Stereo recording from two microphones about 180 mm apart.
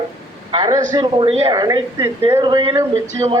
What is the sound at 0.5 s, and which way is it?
A man's voice, 25° right (ahead or behind).